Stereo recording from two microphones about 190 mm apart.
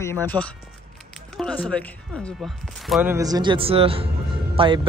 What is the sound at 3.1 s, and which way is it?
A man's voice, 20° right (ahead or behind).